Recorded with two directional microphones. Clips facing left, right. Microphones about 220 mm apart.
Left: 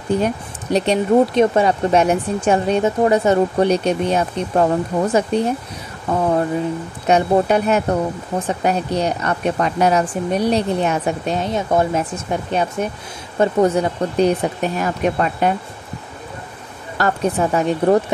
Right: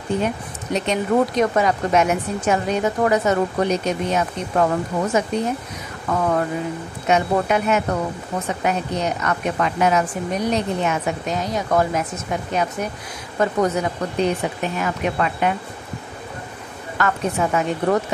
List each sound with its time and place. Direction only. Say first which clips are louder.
0.2 s speech: left 3 dB; 35° left (ahead or behind)
17.0 s speech: left 3 dB; 35° left (ahead or behind)